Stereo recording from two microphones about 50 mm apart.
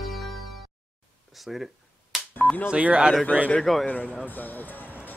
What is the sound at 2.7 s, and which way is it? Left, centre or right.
Speech, right.